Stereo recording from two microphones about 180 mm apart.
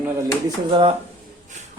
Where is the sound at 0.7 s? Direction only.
30° right (ahead or behind).